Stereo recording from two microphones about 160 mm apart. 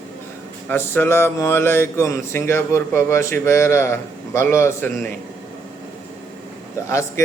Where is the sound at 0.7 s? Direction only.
15° left (ahead or behind).